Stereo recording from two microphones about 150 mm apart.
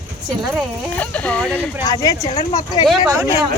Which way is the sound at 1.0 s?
10° left (ahead or behind).